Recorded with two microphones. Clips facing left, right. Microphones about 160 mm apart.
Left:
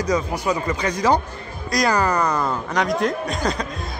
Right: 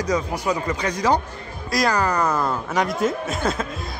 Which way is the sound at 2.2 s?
Centre (ahead or behind).